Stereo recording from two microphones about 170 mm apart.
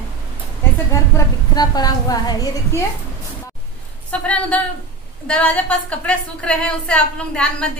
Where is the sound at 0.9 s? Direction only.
20° left (ahead or behind).